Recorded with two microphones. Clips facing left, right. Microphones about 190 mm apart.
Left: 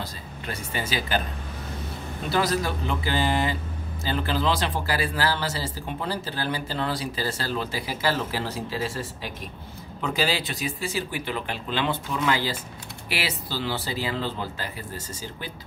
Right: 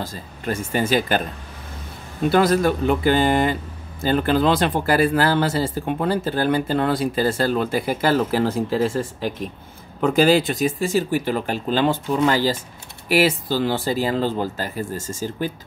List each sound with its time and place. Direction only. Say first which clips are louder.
0.0 s speech: right 6 dB; 50° right (ahead or behind)
2.2 s speech: right 8 dB; 50° right (ahead or behind)